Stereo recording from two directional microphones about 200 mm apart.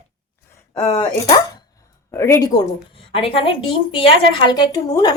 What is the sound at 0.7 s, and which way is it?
Speech, 20° left (ahead or behind).